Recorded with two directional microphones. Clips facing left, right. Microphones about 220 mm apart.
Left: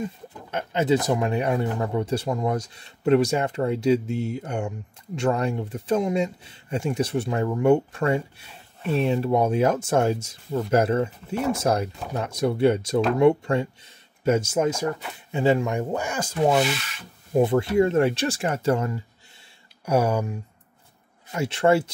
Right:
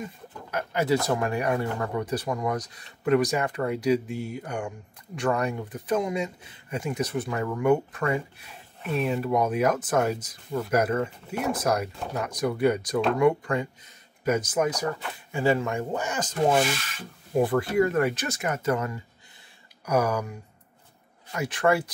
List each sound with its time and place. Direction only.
0.5 s speech: 25° left (ahead or behind)
16.6 s rub: 45° right (ahead or behind)
17.4 s speech: 25° left (ahead or behind)
21.3 s speech: 25° left (ahead or behind)